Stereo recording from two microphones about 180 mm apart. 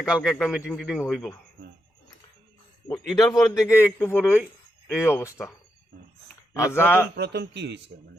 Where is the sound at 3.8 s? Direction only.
10° left (ahead or behind).